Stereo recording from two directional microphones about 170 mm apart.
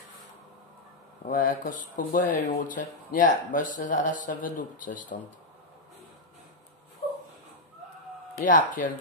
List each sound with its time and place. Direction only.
1.2 s speech: 55° left (ahead or behind)
8.5 s speech: 50° left (ahead or behind)